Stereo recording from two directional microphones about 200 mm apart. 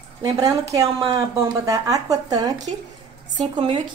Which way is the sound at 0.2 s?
20° right (ahead or behind).